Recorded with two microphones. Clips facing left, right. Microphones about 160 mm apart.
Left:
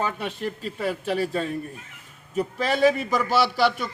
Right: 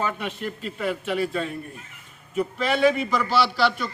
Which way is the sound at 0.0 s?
35° left (ahead or behind).